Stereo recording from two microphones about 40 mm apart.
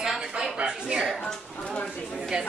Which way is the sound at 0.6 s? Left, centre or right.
Right.